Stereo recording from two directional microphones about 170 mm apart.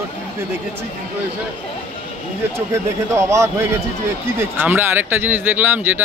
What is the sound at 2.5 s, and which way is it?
Speech, 15° right (ahead or behind).